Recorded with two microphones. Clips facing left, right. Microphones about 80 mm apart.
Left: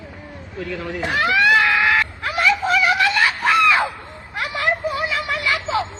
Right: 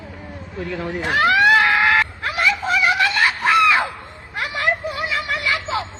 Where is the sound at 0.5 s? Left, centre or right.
Right.